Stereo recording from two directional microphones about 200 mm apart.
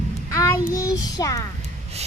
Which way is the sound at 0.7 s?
15° left (ahead or behind).